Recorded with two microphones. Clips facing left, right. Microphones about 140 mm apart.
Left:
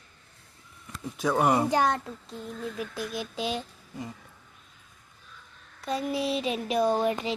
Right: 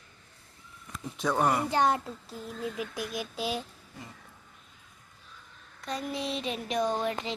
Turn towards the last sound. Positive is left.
turn(degrees=10)  # may be behind; listen again after turning